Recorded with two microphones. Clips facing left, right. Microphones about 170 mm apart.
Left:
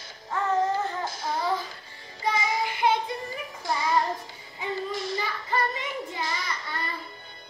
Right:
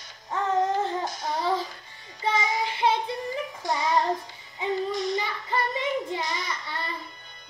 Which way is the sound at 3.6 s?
20° right (ahead or behind).